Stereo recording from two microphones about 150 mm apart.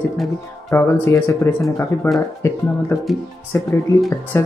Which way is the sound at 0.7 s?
20° left (ahead or behind).